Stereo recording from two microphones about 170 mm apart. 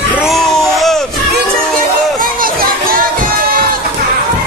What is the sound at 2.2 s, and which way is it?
Crowd, 55° right (ahead or behind).